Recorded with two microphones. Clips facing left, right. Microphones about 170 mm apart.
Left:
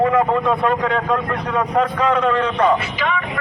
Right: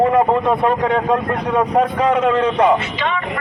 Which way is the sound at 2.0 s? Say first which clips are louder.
Right 2 dB; 25° right (ahead or behind).